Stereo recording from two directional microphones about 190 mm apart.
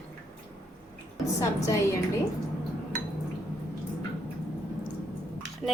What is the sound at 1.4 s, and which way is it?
Speech, 15° left (ahead or behind).